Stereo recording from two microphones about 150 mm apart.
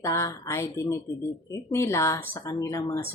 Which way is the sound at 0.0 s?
20° left (ahead or behind).